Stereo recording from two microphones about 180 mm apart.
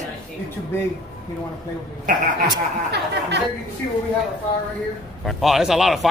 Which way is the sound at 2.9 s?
70° right (ahead or behind).